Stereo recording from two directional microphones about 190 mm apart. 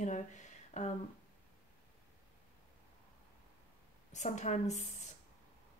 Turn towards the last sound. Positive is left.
turn(degrees=40)  # may be behind; listen again after turning